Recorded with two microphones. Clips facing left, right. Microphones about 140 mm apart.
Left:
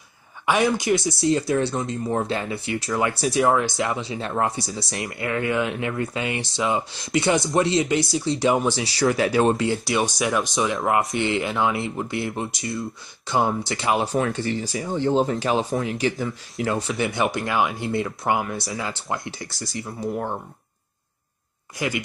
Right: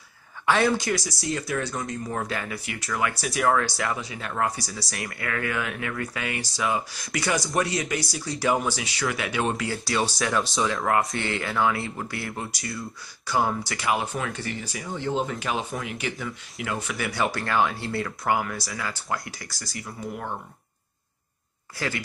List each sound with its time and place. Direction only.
0.5 s speech: 15° left (ahead or behind); by 20.3 s 30° left (ahead or behind)
21.7 s speech: 15° left (ahead or behind)